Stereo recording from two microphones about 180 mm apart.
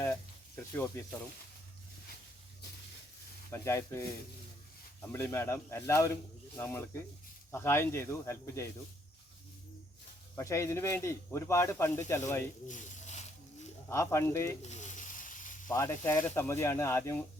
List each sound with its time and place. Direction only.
0.0 s sizzle: 10° left (ahead or behind)
3.5 s speech: 15° left (ahead or behind)
5.0 s speech: 10° left (ahead or behind)
10.3 s speech: 15° left (ahead or behind)
12.6 s mechanisms: 45° left (ahead or behind)
13.8 s speech: 15° left (ahead or behind)
14.7 s a sound: 40° left (ahead or behind)
15.7 s speech: 15° left (ahead or behind)